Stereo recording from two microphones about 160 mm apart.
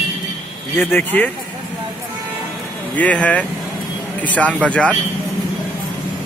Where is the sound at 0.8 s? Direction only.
15° left (ahead or behind).